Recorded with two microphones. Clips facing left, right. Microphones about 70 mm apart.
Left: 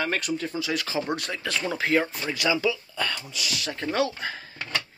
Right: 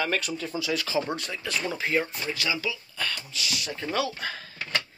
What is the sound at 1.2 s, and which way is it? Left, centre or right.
Speech, left.